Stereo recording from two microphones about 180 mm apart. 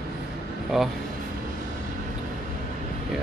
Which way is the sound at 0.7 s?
Centre (ahead or behind).